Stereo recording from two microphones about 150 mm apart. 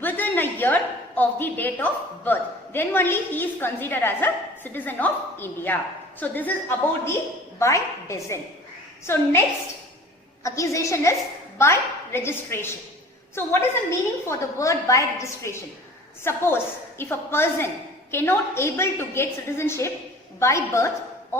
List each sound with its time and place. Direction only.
0.0 s a woman's voice: 15° left (ahead or behind)
10.4 s a woman's voice: 20° left (ahead or behind)